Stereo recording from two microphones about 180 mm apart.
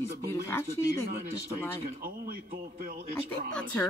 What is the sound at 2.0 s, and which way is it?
Speech, 55° right (ahead or behind).